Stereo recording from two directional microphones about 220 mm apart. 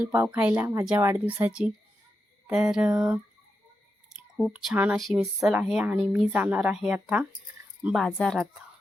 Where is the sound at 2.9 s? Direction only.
15° right (ahead or behind).